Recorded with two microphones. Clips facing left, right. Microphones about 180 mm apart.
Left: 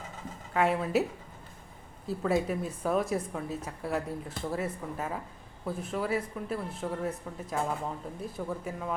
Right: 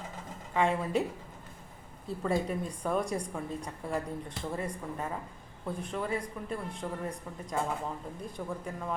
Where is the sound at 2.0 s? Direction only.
5° left (ahead or behind).